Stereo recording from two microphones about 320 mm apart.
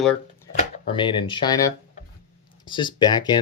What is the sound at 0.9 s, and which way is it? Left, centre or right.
Speech, centre.